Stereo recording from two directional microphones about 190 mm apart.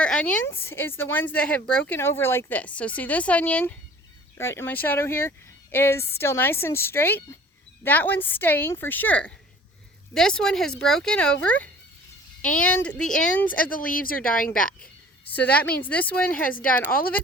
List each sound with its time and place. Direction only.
0.0 s speech: 5° left (ahead or behind)
13.5 s speech: 50° left (ahead or behind)
15.3 s speech: 10° left (ahead or behind)